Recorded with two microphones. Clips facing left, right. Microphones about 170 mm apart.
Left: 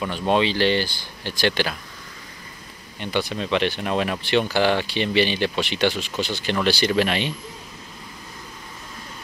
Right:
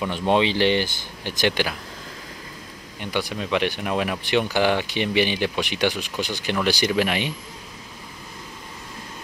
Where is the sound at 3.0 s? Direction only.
10° right (ahead or behind).